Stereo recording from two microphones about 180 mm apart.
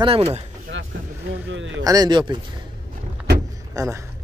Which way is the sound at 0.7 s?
90° right.